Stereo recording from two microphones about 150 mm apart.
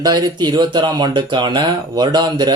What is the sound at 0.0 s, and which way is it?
Speech, 25° right (ahead or behind).